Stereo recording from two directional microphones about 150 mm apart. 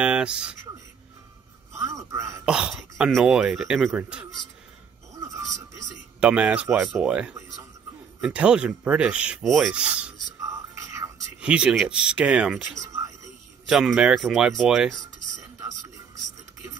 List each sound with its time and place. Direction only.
0.0 s speech: 5° right (ahead or behind)
2.4 s speech: 5° right (ahead or behind)
5.2 s music: 20° right (ahead or behind)
6.2 s speech: 10° right (ahead or behind)
10.4 s whispering: 20° right (ahead or behind)
11.4 s speech: 5° right (ahead or behind)
13.7 s speech: centre (ahead or behind)